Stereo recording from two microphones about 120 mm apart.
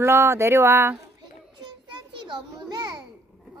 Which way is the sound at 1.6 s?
40° right (ahead or behind).